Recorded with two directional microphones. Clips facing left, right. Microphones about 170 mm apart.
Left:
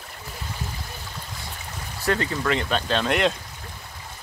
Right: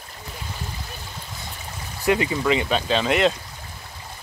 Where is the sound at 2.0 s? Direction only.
10° right (ahead or behind).